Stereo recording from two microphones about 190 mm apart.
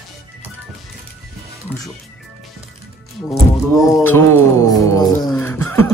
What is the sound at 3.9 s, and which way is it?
Speech, 10° left (ahead or behind).